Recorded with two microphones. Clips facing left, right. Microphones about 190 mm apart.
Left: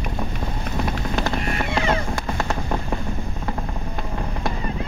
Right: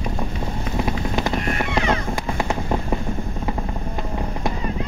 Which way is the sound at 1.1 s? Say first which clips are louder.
Right 1 dB; 20° right (ahead or behind).